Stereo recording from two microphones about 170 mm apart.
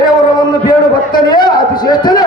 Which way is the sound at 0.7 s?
25° left (ahead or behind).